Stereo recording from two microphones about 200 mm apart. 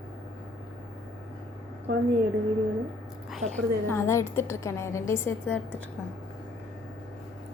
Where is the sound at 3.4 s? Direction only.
90° right.